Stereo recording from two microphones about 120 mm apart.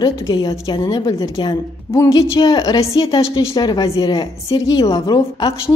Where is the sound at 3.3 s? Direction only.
40° left (ahead or behind).